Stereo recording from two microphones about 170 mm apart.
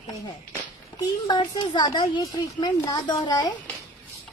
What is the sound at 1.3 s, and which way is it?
A woman's voice, 25° left (ahead or behind).